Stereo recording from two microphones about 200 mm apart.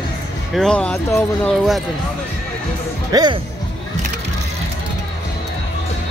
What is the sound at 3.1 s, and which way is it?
Speech, 20° right (ahead or behind).